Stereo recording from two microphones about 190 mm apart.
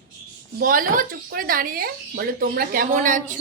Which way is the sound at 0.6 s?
45° right (ahead or behind).